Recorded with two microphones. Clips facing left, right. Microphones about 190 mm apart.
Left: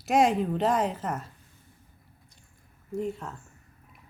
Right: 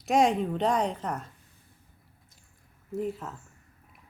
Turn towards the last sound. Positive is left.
turn(degrees=0)  # may be behind; listen again after turning